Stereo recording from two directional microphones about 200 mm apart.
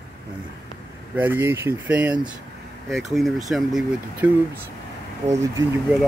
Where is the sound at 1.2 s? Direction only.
10° right (ahead or behind).